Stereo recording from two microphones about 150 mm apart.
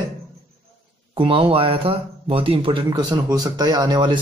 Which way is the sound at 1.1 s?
35° right (ahead or behind).